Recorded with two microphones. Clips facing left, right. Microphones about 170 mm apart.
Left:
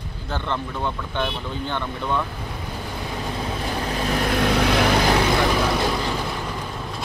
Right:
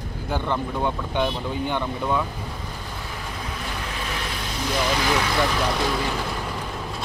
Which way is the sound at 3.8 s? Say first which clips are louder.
Left 10 dB; 40° left (ahead or behind).